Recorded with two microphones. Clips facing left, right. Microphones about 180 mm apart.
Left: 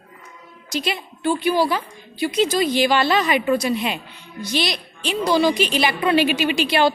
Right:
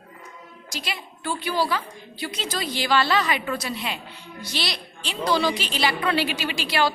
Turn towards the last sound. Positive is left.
turn(degrees=20)  # may be behind; listen again after turning